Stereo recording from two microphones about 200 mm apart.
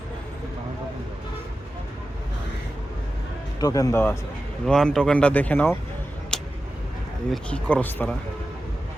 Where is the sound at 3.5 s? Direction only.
15° left (ahead or behind).